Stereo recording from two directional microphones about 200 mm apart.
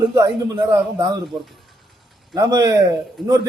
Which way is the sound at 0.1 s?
20° right (ahead or behind).